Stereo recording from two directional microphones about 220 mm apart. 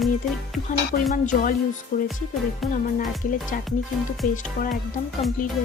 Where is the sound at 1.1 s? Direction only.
35° left (ahead or behind).